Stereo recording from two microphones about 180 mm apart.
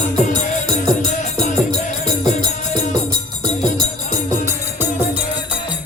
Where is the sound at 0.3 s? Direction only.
45° left (ahead or behind).